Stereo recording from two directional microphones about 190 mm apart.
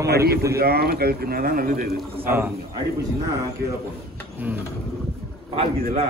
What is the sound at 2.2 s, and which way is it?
Speech, 10° right (ahead or behind).